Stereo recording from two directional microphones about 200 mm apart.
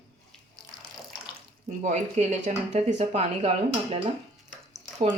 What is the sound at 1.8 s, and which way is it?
Speech, 40° right (ahead or behind).